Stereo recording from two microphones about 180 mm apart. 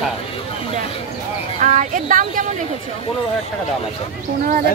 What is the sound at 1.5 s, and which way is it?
Speech, 45° right (ahead or behind).